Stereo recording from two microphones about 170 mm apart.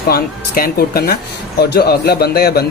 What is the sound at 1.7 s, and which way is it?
Speech, 70° left (ahead or behind).